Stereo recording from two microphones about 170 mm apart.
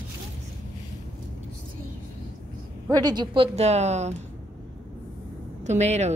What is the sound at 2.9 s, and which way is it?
Speech, 25° right (ahead or behind).